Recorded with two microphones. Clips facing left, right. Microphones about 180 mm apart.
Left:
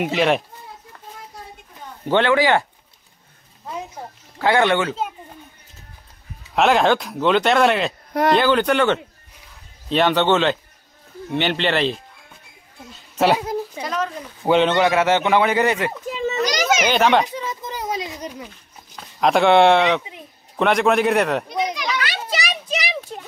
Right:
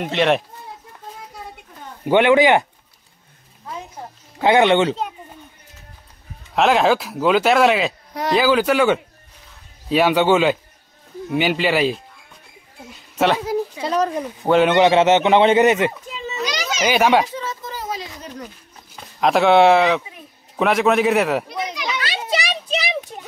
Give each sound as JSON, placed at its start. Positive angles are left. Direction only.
{"t": 0.0, "sound": "a man's voice", "side_deg": 0}
{"t": 2.0, "sound": "a man's voice", "side_deg": -15}
{"t": 4.4, "sound": "speech", "side_deg": -20}
{"t": 6.5, "sound": "a man's voice", "side_deg": 0}
{"t": 13.2, "sound": "a man's voice", "side_deg": 5}
{"t": 13.8, "sound": "a sound", "side_deg": -35}
{"t": 14.4, "sound": "a man's voice", "side_deg": -5}
{"t": 14.8, "sound": "speech", "side_deg": -25}
{"t": 16.4, "sound": "children playing", "side_deg": 50}
{"t": 16.8, "sound": "a man's voice", "side_deg": -10}
{"t": 17.3, "sound": "a sound", "side_deg": 15}
{"t": 19.1, "sound": "a man's voice", "side_deg": 0}
{"t": 21.9, "sound": "children playing", "side_deg": -25}